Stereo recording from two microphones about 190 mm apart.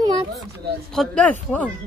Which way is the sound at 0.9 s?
5° left (ahead or behind).